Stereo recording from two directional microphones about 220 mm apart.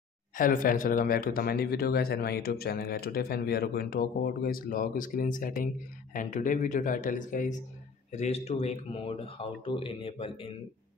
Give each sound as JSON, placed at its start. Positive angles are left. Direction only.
{"t": 0.4, "sound": "speech", "side_deg": 40}